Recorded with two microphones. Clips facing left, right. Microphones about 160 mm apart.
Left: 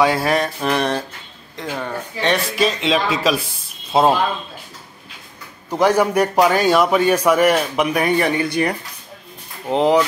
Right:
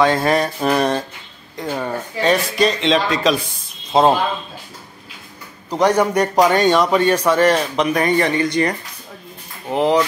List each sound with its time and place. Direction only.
0.0 s speech: 5° left (ahead or behind)
1.6 s speech: 15° right (ahead or behind)
2.5 s speech: 5° left (ahead or behind)
5.7 s a man's voice: 5° left (ahead or behind); by 9.9 s 20° left (ahead or behind)